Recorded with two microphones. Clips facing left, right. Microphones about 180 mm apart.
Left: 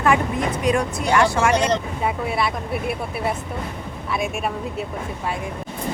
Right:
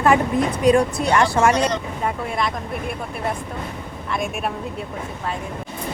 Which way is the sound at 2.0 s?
5° left (ahead or behind).